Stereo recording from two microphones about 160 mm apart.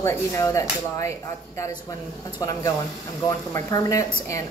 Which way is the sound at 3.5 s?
20° left (ahead or behind).